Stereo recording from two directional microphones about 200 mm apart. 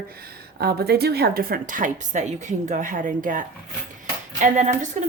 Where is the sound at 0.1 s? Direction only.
50° right (ahead or behind).